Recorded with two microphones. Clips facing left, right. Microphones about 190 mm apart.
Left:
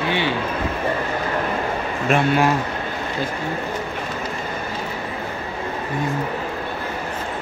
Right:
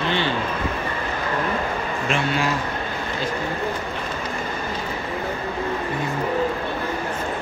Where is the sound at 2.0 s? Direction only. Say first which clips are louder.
Left 7 dB; 50° left (ahead or behind).